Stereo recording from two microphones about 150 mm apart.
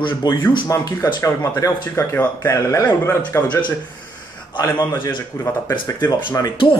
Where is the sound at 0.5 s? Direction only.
30° left (ahead or behind); by 3.4 s 10° left (ahead or behind).